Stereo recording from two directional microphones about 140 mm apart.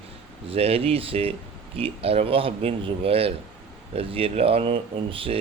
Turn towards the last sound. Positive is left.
turn(degrees=-40)  # may be behind; listen again after turning